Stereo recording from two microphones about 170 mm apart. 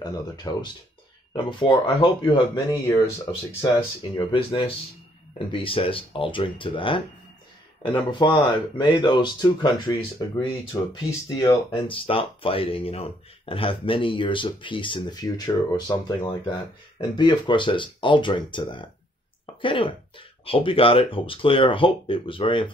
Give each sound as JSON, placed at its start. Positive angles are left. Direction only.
{"t": 0.0, "sound": "speech", "side_deg": 25}
{"t": 11.7, "sound": "speech", "side_deg": 35}